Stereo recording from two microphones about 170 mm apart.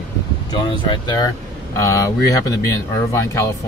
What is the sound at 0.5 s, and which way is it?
Speech, 30° left (ahead or behind).